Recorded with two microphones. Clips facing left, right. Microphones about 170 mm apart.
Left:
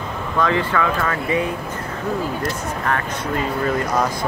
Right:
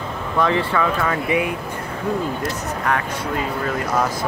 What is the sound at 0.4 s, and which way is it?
Speech, 25° right (ahead or behind).